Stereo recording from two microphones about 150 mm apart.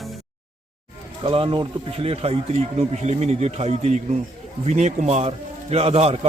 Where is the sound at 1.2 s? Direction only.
40° right (ahead or behind).